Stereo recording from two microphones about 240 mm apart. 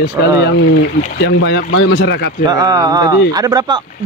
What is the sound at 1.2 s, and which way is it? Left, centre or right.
Speech, left.